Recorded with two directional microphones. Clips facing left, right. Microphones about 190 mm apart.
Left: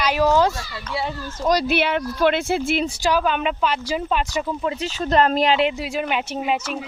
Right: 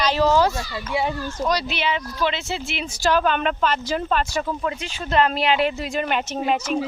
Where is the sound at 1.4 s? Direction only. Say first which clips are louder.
Left 5 dB; 50° left (ahead or behind).